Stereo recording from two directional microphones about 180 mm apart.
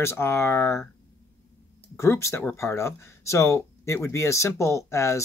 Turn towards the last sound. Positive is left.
turn(degrees=15)  # may be behind; listen again after turning